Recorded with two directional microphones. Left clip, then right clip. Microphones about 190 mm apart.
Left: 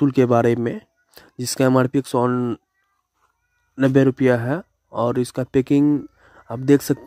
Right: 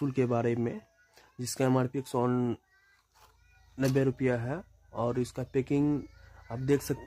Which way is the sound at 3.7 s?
45° left (ahead or behind).